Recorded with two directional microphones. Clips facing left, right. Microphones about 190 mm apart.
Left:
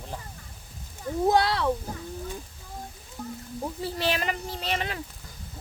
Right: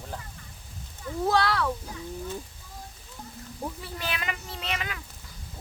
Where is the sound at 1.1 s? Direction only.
20° left (ahead or behind).